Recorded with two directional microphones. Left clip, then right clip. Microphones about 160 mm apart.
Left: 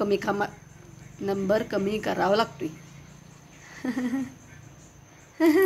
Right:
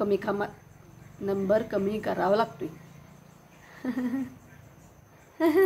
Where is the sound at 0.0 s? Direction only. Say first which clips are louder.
Left 2 dB; 15° left (ahead or behind).